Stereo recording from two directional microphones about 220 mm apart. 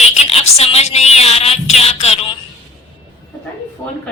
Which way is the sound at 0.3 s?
25° left (ahead or behind).